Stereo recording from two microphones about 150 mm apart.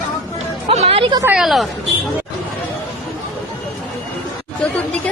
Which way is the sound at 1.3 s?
Centre (ahead or behind).